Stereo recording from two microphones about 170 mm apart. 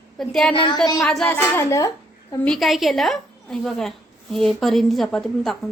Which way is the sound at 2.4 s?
Centre (ahead or behind).